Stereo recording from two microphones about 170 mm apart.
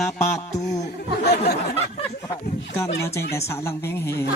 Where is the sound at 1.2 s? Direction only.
70° left (ahead or behind).